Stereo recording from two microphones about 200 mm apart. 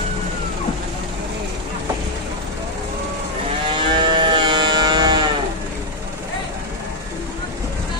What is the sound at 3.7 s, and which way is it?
Vehicle, 25° right (ahead or behind).